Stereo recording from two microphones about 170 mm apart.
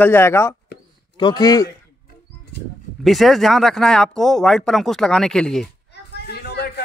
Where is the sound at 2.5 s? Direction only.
90° left.